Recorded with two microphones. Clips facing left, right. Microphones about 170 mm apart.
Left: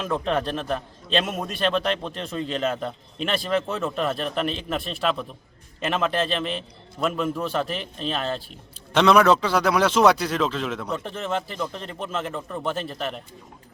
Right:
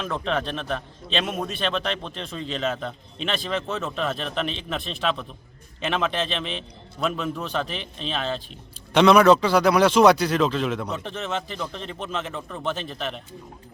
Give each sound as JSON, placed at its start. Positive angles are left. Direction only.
{"t": 0.1, "sound": "a man's voice", "side_deg": 10}